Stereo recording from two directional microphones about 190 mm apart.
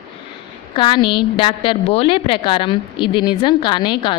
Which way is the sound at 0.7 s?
25° left (ahead or behind).